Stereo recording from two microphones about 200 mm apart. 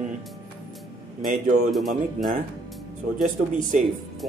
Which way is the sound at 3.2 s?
40° right (ahead or behind).